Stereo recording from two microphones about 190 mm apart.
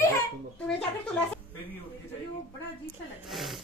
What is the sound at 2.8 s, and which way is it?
Speech, centre (ahead or behind).